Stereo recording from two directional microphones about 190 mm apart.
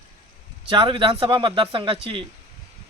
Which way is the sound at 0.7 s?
25° right (ahead or behind).